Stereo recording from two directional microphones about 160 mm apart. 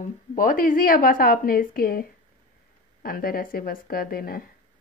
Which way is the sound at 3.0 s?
70° left (ahead or behind).